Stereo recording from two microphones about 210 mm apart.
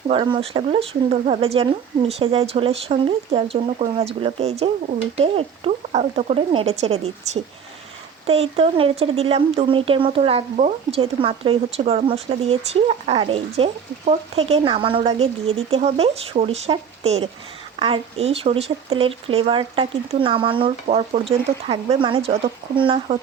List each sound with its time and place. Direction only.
0.1 s speech: 25° right (ahead or behind)